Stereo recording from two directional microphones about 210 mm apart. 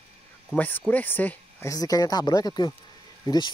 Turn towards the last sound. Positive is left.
turn(degrees=20)  # may be behind; listen again after turning